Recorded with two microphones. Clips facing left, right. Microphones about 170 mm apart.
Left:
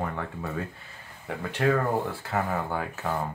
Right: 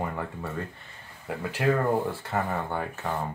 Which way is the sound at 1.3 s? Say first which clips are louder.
Left 1 dB; 5° right (ahead or behind).